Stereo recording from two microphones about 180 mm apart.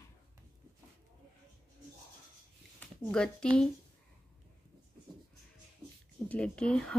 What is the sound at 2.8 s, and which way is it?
Speech, 5° left (ahead or behind).